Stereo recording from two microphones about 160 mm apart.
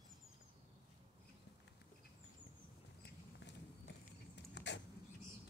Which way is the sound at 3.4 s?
90° left.